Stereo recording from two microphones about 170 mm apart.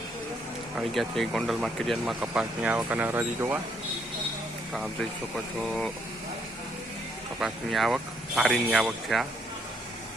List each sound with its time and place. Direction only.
0.8 s speech: centre (ahead or behind)
5.5 s speech: centre (ahead or behind)
7.3 s speech: centre (ahead or behind)